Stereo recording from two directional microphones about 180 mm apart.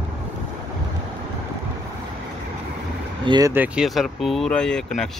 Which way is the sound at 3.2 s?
25° right (ahead or behind).